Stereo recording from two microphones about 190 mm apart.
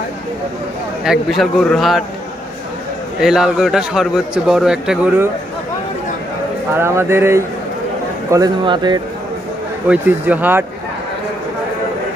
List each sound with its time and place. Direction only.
1.0 s a man's voice: centre (ahead or behind)
3.2 s a man's voice: centre (ahead or behind)
6.7 s speech: 10° right (ahead or behind)
9.8 s speech: 10° right (ahead or behind)